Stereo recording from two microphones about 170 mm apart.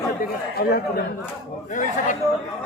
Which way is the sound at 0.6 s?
65° left (ahead or behind).